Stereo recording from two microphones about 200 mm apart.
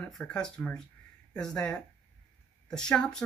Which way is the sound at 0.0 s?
5° left (ahead or behind).